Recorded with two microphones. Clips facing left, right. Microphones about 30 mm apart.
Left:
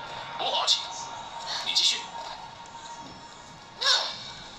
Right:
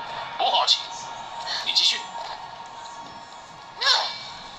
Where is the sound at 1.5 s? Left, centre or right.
Right.